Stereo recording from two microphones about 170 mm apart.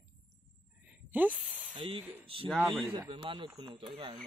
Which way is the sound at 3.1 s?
30° right (ahead or behind).